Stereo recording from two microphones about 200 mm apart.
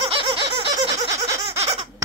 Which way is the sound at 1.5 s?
30° right (ahead or behind).